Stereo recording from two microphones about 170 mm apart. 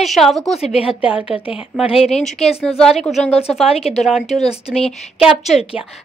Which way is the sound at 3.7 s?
35° left (ahead or behind).